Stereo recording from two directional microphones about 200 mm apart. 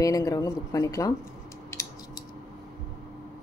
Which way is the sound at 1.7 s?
15° left (ahead or behind).